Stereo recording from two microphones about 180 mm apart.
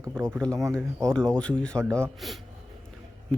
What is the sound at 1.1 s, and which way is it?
Speech, 5° left (ahead or behind).